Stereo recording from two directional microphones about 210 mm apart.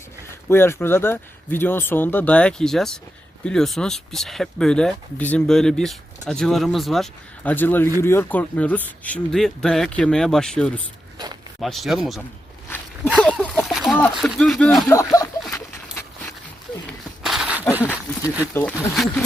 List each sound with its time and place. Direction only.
0.4 s speech: 10° left (ahead or behind)
13.1 s a sound: centre (ahead or behind)
14.2 s speech: centre (ahead or behind)
14.8 s speech: 15° left (ahead or behind)
17.2 s a sound: centre (ahead or behind)
18.5 s speech: 10° left (ahead or behind)
18.9 s speech: centre (ahead or behind)